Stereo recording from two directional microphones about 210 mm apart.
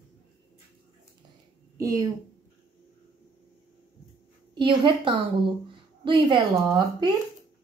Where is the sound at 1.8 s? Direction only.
15° right (ahead or behind).